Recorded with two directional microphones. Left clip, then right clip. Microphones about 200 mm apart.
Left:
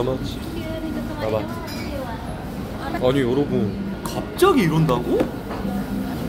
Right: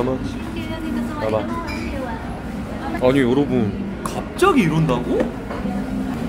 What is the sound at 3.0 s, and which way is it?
Speech, 20° right (ahead or behind).